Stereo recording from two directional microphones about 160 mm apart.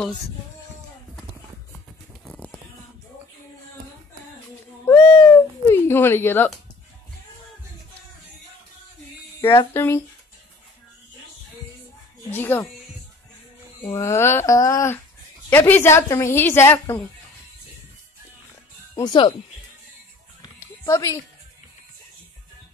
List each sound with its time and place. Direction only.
2.2 s music: 10° left (ahead or behind)
4.8 s a sound: 15° left (ahead or behind)
9.4 s a woman's voice: 15° left (ahead or behind)
12.3 s a woman's voice: 15° left (ahead or behind)
13.8 s a woman's voice: 20° left (ahead or behind)
18.9 s speech: 30° left (ahead or behind)
20.8 s speech: 20° left (ahead or behind)